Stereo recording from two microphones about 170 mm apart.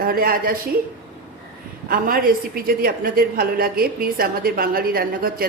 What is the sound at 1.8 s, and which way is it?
A woman's voice, 55° right (ahead or behind).